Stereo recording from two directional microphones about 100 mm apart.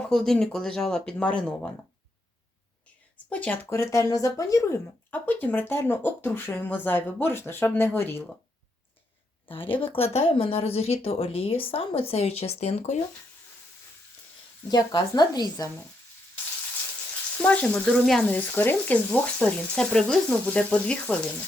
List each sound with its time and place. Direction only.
0.0 s speech: 5° left (ahead or behind)
3.2 s speech: 15° left (ahead or behind)
3.7 s speech: 30° left (ahead or behind)
5.1 s speech: 15° left (ahead or behind)
9.6 s speech: 65° left (ahead or behind); by 12.9 s 90° left
14.7 s speech: 40° left (ahead or behind)
17.4 s speech: 15° left (ahead or behind)